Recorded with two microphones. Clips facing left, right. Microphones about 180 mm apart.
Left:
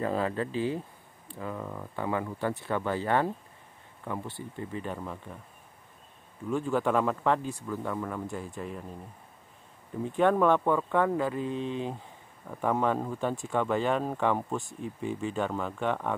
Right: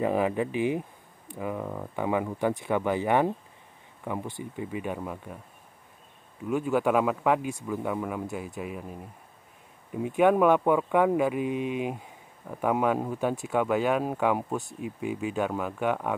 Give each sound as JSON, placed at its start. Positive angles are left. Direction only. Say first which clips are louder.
{"t": 0.0, "sound": "speech", "louder": "right 4 dB", "side_deg": -15}
{"t": 6.5, "sound": "speech", "louder": "right 3 dB", "side_deg": -10}